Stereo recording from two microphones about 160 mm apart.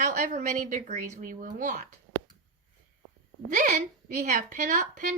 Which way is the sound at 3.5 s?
55° right (ahead or behind).